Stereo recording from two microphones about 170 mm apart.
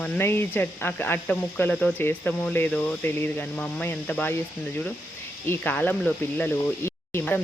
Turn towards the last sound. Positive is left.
turn(degrees=15)  # may be behind; listen again after turning